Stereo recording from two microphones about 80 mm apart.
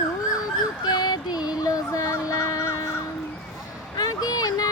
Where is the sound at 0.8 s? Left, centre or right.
Left.